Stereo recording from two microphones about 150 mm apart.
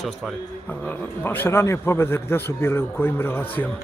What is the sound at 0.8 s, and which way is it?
A man's voice, 15° left (ahead or behind).